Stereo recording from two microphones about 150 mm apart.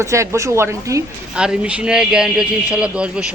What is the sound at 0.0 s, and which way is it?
Speech, 20° right (ahead or behind).